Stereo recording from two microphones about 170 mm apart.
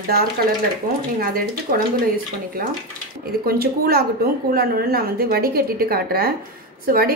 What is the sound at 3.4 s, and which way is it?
A woman's voice, 60° right (ahead or behind).